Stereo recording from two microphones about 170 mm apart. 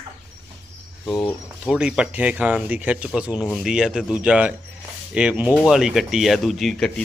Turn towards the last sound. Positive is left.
turn(degrees=5)  # may be behind; listen again after turning